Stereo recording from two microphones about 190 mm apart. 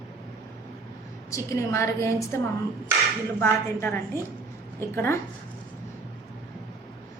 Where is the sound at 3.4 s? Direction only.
10° left (ahead or behind).